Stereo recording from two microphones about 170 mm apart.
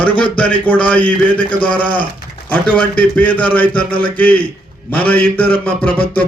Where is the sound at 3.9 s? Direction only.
30° left (ahead or behind).